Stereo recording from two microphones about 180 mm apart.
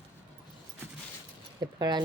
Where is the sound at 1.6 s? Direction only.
25° right (ahead or behind).